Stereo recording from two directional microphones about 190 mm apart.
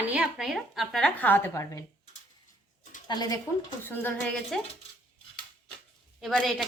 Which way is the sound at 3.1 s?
20° left (ahead or behind).